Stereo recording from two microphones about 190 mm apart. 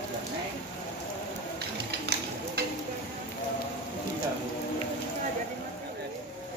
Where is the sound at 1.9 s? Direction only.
60° right (ahead or behind).